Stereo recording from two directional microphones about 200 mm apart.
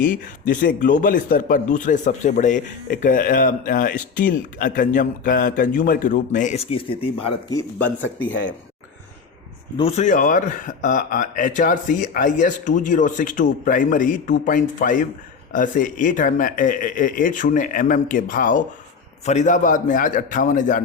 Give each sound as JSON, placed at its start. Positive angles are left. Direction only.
{"t": 0.0, "sound": "a man's voice", "side_deg": 40}
{"t": 7.5, "sound": "speech", "side_deg": 10}
{"t": 9.7, "sound": "a man's voice", "side_deg": 30}